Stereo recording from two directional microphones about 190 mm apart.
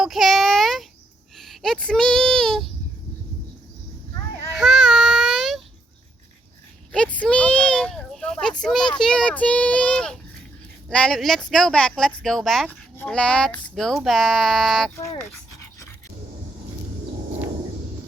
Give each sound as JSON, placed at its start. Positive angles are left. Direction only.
{"t": 0.0, "sound": "child singing", "side_deg": 0}
{"t": 1.4, "sound": "speech", "side_deg": 0}
{"t": 4.5, "sound": "child singing", "side_deg": 0}
{"t": 6.9, "sound": "children playing", "side_deg": 5}
{"t": 10.8, "sound": "speech", "side_deg": 5}